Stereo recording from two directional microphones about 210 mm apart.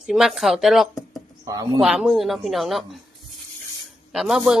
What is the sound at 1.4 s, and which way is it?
Speech, 15° right (ahead or behind).